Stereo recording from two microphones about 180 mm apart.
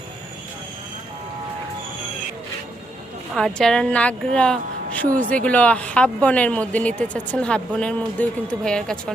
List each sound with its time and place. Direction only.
3.3 s speech: 5° left (ahead or behind)